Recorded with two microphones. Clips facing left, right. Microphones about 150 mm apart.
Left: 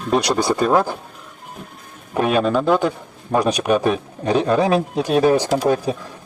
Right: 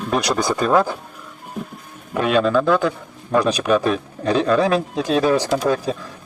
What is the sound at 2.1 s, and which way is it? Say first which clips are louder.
A man's voice: even; 20° left (ahead or behind).